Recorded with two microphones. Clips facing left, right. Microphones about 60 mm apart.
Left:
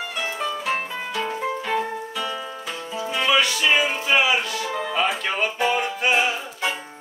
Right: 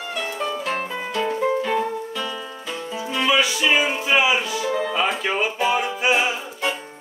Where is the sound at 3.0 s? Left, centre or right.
Centre.